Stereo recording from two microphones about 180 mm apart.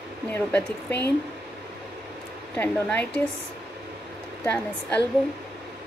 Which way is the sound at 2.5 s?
10° left (ahead or behind).